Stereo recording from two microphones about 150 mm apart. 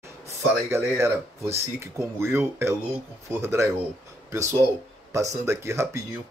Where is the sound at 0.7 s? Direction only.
20° right (ahead or behind).